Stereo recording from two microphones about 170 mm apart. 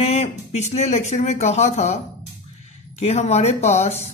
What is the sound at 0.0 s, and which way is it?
Speech, 40° left (ahead or behind).